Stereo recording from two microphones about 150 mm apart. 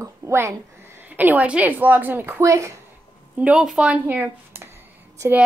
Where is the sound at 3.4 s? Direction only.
5° right (ahead or behind).